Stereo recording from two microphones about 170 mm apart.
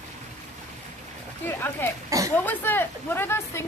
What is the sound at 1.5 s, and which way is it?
Speech, 10° left (ahead or behind).